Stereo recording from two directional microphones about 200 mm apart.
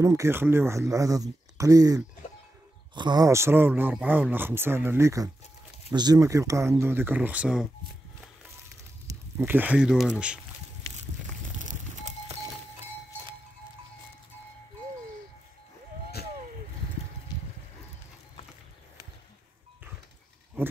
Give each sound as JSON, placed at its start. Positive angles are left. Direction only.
{"t": 0.0, "sound": "speech", "side_deg": -15}
{"t": 9.0, "sound": "speech", "side_deg": -10}
{"t": 11.6, "sound": "a sound", "side_deg": -35}